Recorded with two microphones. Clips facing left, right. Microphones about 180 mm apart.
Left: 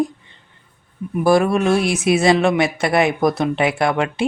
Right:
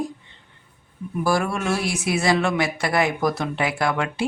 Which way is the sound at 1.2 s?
20° left (ahead or behind).